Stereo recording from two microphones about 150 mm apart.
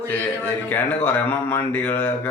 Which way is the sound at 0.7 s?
15° left (ahead or behind).